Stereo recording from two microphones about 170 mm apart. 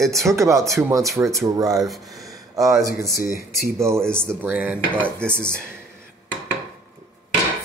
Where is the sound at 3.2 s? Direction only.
60° left (ahead or behind).